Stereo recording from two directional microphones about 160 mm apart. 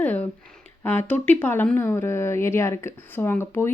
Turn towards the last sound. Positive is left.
turn(degrees=15)  # may be behind; listen again after turning